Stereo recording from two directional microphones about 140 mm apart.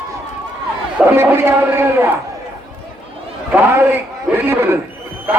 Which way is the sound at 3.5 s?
15° right (ahead or behind).